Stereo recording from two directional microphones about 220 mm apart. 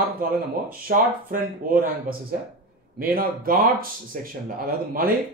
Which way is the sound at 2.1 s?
40° right (ahead or behind).